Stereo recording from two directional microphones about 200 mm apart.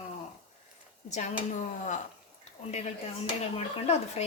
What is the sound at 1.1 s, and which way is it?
Speech, 35° left (ahead or behind).